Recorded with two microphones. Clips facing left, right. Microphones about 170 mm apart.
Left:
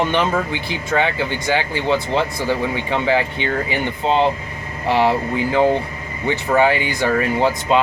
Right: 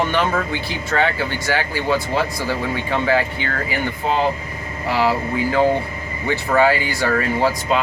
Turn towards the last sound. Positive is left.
turn(degrees=20)  # may be behind; listen again after turning